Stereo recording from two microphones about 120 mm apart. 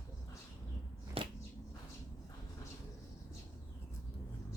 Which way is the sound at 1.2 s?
50° right (ahead or behind).